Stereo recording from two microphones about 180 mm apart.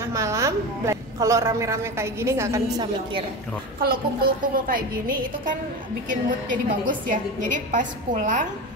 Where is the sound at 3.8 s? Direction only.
55° right (ahead or behind).